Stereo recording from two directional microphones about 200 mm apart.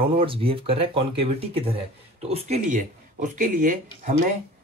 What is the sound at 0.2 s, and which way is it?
Speech, 30° right (ahead or behind).